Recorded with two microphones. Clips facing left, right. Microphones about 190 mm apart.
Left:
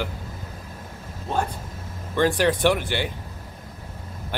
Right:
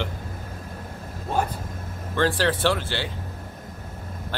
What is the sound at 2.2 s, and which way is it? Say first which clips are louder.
Speech: left 2 dB; 15° left (ahead or behind).